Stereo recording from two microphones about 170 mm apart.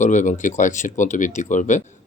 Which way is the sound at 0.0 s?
45° left (ahead or behind).